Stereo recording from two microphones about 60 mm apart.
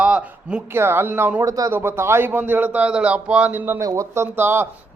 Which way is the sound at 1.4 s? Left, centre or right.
Right.